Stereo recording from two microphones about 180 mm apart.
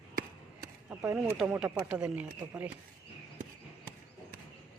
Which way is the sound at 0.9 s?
10° right (ahead or behind).